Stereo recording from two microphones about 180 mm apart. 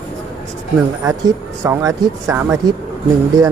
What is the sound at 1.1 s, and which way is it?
Speech, 15° right (ahead or behind).